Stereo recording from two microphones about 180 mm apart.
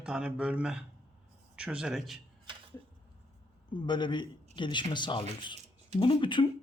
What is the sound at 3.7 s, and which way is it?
Speech, 25° left (ahead or behind).